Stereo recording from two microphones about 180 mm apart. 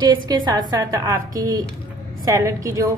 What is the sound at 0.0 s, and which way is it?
A woman's voice, 25° right (ahead or behind).